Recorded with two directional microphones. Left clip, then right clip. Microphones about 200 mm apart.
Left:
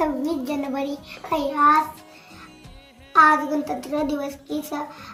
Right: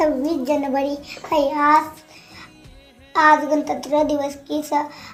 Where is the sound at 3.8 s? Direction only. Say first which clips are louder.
Right 6 dB; 55° left (ahead or behind).